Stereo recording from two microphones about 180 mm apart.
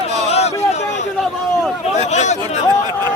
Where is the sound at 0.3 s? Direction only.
35° left (ahead or behind).